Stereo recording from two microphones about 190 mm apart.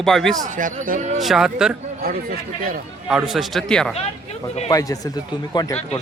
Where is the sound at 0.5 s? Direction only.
45° right (ahead or behind).